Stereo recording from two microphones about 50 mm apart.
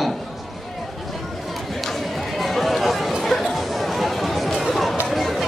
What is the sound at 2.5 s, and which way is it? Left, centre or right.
Chatter, centre.